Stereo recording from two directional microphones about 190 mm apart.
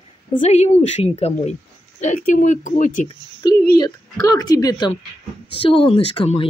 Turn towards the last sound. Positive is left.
turn(degrees=25)  # may be behind; listen again after turning